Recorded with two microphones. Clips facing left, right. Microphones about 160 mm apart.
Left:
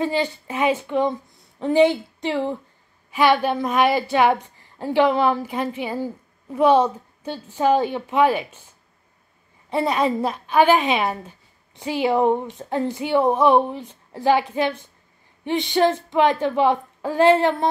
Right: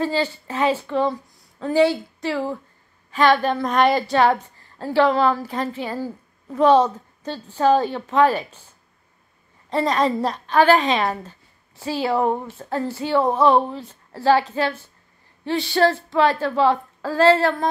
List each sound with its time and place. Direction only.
0.0 s a woman's voice: 15° left (ahead or behind)
9.7 s a woman's voice: 10° left (ahead or behind)